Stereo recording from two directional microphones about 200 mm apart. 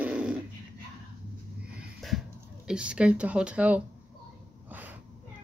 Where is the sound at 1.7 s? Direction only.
Centre (ahead or behind).